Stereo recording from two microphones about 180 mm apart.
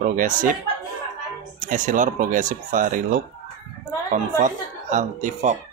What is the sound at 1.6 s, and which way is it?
Speech, 45° right (ahead or behind).